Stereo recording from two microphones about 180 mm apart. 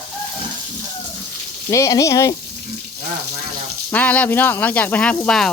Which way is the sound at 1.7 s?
20° left (ahead or behind).